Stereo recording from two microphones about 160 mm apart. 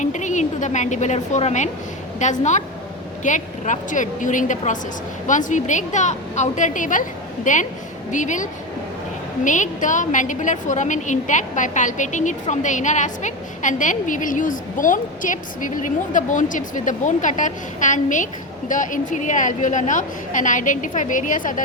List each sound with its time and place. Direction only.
0.0 s a woman's voice: 50° left (ahead or behind)